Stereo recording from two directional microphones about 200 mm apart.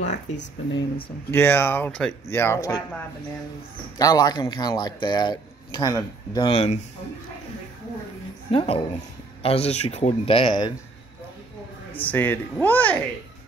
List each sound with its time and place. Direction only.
0.1 s speech: 60° left (ahead or behind)
1.3 s speech: 10° left (ahead or behind)
4.0 s speech: 20° left (ahead or behind)
8.5 s speech: 25° left (ahead or behind)
12.0 s speech: 10° left (ahead or behind)